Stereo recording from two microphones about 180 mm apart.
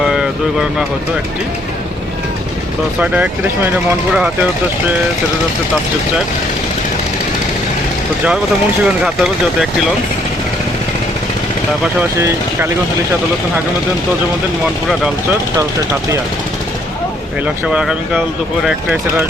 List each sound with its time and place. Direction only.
0.0 s a sound: 5° right (ahead or behind)
3.0 s speech: 10° right (ahead or behind)
8.8 s speech: 5° right (ahead or behind)
11.9 s speech: 15° right (ahead or behind)
14.8 s speech: 5° right (ahead or behind)
17.4 s speech: 5° right (ahead or behind)